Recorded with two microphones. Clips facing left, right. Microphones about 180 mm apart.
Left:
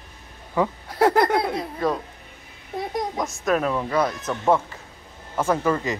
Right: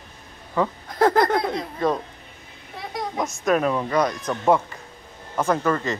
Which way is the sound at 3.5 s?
5° right (ahead or behind).